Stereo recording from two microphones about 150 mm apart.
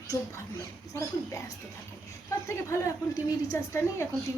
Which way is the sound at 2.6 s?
20° left (ahead or behind).